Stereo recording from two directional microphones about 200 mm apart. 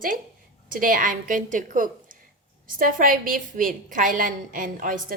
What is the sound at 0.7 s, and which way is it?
A woman's voice, 45° right (ahead or behind).